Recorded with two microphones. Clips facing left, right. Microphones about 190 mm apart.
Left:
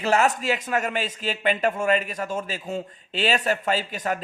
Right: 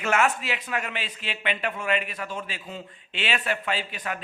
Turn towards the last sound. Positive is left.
turn(degrees=40)  # may be behind; listen again after turning